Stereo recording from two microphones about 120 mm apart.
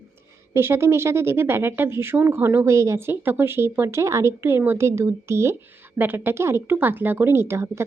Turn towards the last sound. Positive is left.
turn(degrees=-20)  # may be behind; listen again after turning